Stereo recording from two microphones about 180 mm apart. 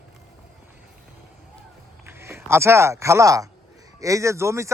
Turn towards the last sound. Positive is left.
turn(degrees=-15)  # may be behind; listen again after turning